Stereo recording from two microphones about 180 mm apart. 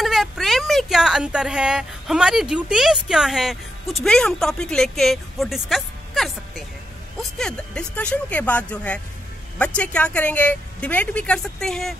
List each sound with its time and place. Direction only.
0.0 s speech: centre (ahead or behind)